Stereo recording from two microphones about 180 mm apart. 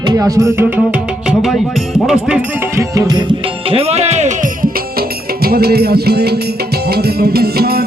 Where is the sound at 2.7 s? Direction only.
20° right (ahead or behind); by 7.8 s 60° right (ahead or behind).